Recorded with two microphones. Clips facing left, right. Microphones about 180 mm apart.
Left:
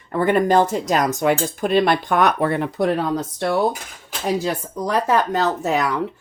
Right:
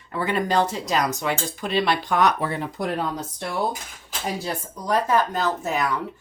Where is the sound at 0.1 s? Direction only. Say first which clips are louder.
Left 7 dB; 50° left (ahead or behind).